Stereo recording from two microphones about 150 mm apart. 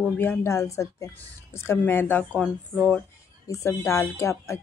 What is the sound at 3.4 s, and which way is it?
A woman's voice, 20° left (ahead or behind).